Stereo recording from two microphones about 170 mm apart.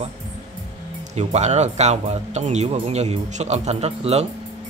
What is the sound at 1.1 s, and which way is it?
Speech, 40° right (ahead or behind).